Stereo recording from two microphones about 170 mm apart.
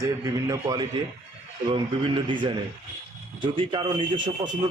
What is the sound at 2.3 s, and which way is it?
Speech, 30° right (ahead or behind).